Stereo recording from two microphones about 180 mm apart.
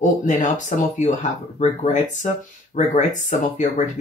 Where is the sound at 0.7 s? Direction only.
40° left (ahead or behind).